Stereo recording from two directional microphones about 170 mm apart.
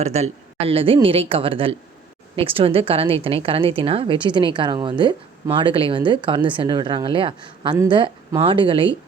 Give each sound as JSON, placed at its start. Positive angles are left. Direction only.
{"t": 0.0, "sound": "a woman's voice", "side_deg": -40}